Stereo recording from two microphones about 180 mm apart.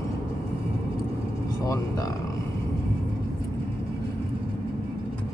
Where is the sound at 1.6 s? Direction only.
20° left (ahead or behind).